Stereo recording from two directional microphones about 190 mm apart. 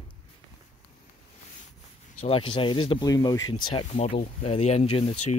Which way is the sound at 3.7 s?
30° left (ahead or behind).